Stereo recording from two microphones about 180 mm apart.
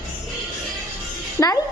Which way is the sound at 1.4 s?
15° left (ahead or behind).